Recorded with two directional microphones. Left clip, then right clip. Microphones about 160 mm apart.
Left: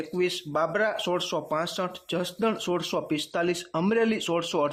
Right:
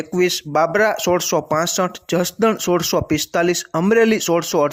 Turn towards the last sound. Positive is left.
turn(degrees=-35)  # may be behind; listen again after turning